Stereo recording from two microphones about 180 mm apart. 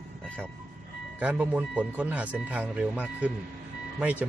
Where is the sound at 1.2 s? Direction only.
10° right (ahead or behind).